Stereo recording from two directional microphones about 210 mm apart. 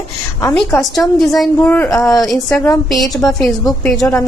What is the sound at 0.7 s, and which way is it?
A woman's voice, centre (ahead or behind).